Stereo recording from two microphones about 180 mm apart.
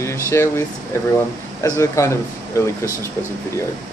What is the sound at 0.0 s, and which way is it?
Speech, 15° left (ahead or behind).